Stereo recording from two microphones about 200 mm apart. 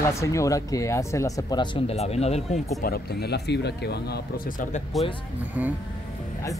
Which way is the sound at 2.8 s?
50° left (ahead or behind).